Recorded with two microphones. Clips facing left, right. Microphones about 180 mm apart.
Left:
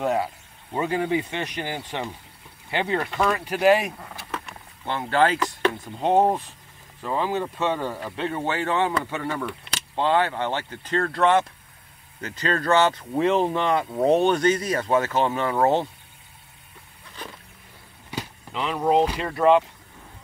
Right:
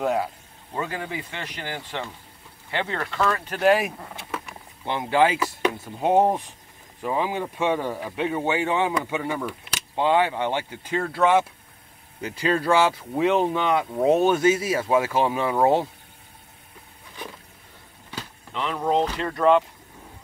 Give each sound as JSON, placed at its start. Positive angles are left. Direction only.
{"t": 0.0, "sound": "speech", "side_deg": 0}
{"t": 0.7, "sound": "speech", "side_deg": 20}
{"t": 3.6, "sound": "speech", "side_deg": 0}
{"t": 4.3, "sound": "speech", "side_deg": -10}
{"t": 18.1, "sound": "speech", "side_deg": 10}